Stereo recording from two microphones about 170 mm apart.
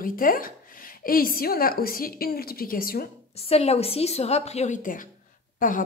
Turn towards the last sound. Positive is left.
turn(degrees=50)  # may be behind; listen again after turning